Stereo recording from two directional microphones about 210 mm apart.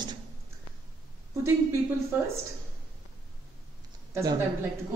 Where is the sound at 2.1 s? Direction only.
10° right (ahead or behind).